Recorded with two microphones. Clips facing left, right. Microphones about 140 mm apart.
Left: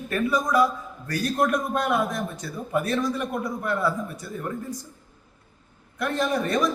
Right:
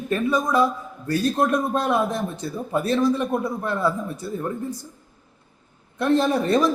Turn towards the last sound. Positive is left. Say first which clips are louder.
# right 4 dB
turn(degrees=-30)  # may be behind; listen again after turning